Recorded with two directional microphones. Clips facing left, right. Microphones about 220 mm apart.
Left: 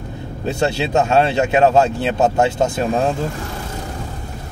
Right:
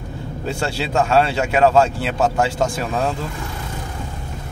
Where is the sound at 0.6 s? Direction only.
20° left (ahead or behind).